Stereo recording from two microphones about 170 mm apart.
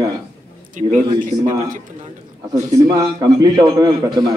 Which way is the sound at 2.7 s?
20° right (ahead or behind).